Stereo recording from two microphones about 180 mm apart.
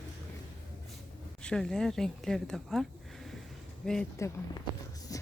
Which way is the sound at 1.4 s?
5° left (ahead or behind).